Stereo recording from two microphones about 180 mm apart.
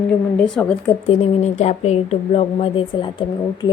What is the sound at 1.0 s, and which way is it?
Speech, 40° left (ahead or behind).